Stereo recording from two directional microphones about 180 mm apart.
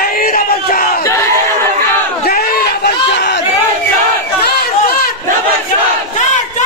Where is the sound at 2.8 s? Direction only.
60° left (ahead or behind).